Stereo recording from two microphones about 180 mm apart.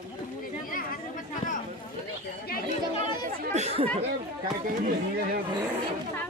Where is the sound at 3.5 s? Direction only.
35° right (ahead or behind).